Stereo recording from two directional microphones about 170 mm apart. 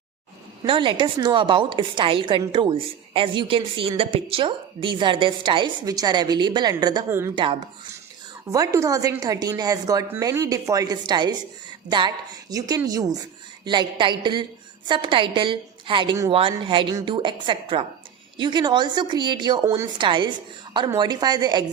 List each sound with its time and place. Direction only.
0.6 s a woman's voice: 30° right (ahead or behind)
7.1 s a woman's voice: 15° right (ahead or behind)
8.5 s a woman's voice: 20° right (ahead or behind)
20.0 s a woman's voice: 30° right (ahead or behind)